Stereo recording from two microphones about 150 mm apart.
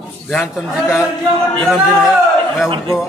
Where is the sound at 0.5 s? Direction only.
5° right (ahead or behind).